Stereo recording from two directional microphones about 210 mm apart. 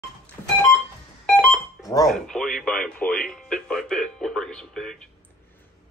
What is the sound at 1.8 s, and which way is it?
Cash register, 15° left (ahead or behind).